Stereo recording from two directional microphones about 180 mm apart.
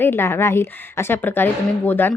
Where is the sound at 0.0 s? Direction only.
15° left (ahead or behind).